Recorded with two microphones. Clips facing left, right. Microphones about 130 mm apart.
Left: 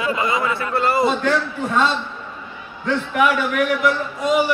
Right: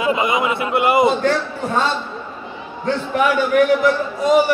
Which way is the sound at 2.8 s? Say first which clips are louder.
Right 1 dB; 35° right (ahead or behind).